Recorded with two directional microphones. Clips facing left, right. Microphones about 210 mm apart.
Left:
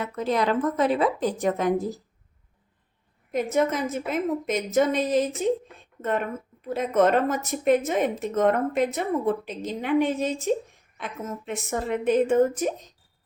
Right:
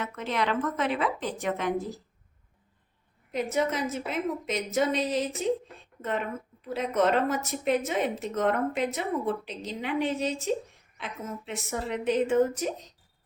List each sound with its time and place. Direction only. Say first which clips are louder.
0.0 s a woman's voice: left 5 dB; 40° left (ahead or behind)
3.3 s speech: left 4 dB; 50° left (ahead or behind)